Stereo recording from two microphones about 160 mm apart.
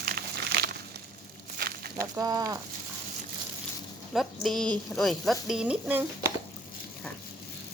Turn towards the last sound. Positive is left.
turn(degrees=-10)  # may be behind; listen again after turning